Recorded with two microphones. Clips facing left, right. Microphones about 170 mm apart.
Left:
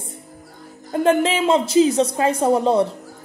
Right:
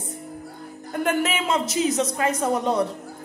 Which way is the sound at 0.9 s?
30° left (ahead or behind).